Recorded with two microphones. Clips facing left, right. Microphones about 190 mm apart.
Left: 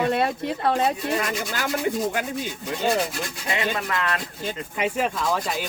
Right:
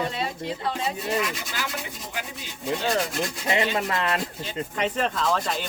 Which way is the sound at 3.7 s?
30° right (ahead or behind).